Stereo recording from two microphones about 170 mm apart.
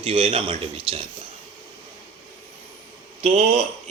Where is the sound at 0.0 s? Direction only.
35° right (ahead or behind).